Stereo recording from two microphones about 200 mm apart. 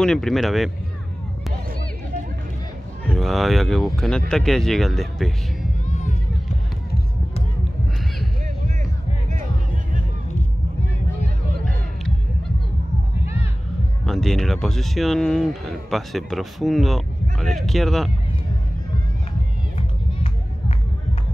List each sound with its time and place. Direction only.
0.0 s speech: centre (ahead or behind)
3.1 s speech: centre (ahead or behind)
5.9 s a sound: 35° left (ahead or behind)
14.0 s speech: centre (ahead or behind)